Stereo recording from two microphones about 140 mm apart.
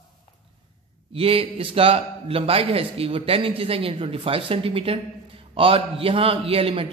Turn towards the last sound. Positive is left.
turn(degrees=-45)  # may be behind; listen again after turning